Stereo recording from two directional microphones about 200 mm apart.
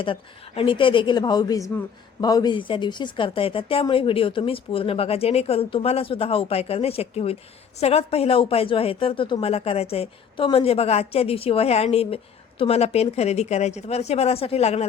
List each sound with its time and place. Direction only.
0.0 s speech: 25° left (ahead or behind)